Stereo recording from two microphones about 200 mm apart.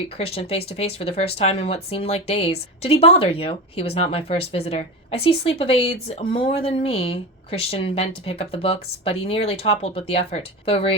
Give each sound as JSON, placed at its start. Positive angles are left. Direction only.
{"t": 0.2, "sound": "speech", "side_deg": 30}